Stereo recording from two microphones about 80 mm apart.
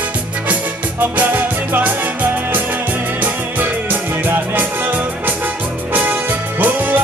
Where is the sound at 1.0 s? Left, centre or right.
Right.